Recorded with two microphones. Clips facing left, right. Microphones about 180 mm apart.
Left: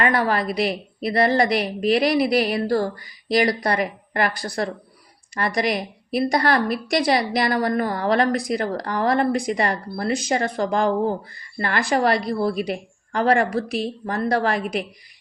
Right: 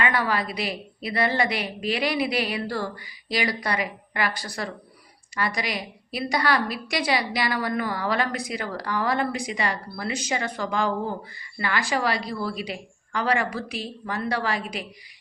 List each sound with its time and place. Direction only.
0.0 s a woman's voice: 45° left (ahead or behind)